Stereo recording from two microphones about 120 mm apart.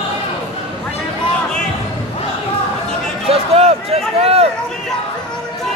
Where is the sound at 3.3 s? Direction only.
55° right (ahead or behind).